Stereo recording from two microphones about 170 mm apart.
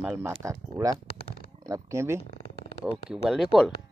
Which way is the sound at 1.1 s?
65° left (ahead or behind).